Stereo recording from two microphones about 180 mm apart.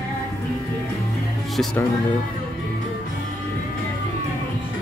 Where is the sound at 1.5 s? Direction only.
Centre (ahead or behind).